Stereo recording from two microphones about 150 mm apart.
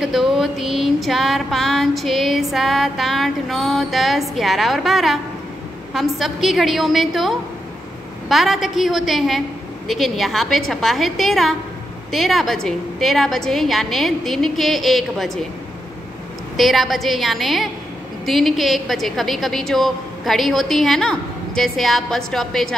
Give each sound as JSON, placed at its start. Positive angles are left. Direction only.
{"t": 0.0, "sound": "a woman's voice", "side_deg": 0}
{"t": 1.0, "sound": "a sound", "side_deg": 0}
{"t": 2.5, "sound": "a woman's voice", "side_deg": 0}
{"t": 16.5, "sound": "a woman's voice", "side_deg": 0}